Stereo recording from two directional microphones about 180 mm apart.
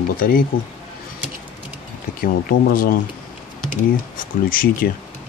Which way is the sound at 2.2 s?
55° left (ahead or behind).